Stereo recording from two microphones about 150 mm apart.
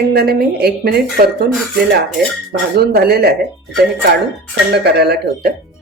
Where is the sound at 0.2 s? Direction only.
90° right.